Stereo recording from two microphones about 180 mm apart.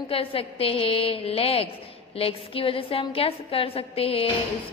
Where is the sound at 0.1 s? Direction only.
30° left (ahead or behind).